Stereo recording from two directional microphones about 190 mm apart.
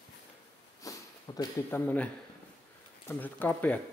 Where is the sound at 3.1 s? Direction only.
10° left (ahead or behind).